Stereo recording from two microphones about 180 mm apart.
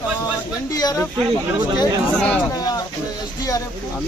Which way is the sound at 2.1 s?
5° left (ahead or behind).